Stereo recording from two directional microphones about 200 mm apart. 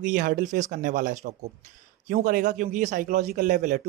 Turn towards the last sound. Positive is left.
turn(degrees=-40)  # may be behind; listen again after turning